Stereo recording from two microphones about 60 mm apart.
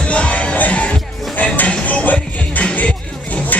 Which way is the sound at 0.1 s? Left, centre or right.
Left.